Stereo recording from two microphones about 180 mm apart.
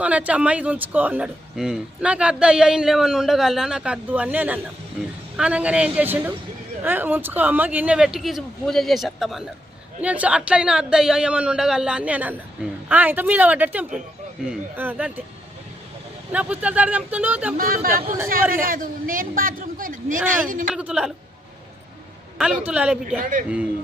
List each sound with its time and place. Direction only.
0.0 s speech: 10° right (ahead or behind)
16.3 s speech: 5° right (ahead or behind)
18.5 s a man's voice: 50° right (ahead or behind)
20.7 s speech: 5° right (ahead or behind)
22.4 s speech: 5° right (ahead or behind)
23.0 s a man's voice: 50° right (ahead or behind)